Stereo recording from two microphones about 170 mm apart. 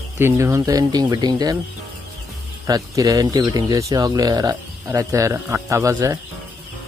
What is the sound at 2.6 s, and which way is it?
Speech, 20° right (ahead or behind).